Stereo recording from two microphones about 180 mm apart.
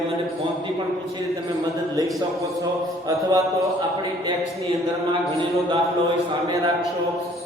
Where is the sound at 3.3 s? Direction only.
15° right (ahead or behind).